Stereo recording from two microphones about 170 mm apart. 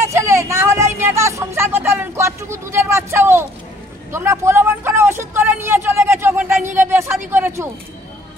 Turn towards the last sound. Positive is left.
turn(degrees=-15)  # may be behind; listen again after turning